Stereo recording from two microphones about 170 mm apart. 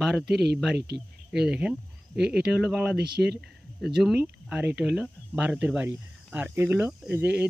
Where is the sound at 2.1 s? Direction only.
75° right (ahead or behind).